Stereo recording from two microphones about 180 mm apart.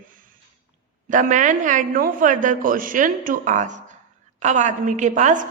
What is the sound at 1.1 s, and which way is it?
A woman's voice, 45° right (ahead or behind).